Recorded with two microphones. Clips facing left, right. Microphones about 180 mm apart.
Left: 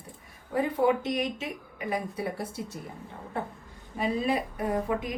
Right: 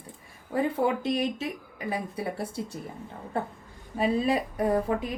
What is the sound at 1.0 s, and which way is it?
A woman's voice, 30° right (ahead or behind).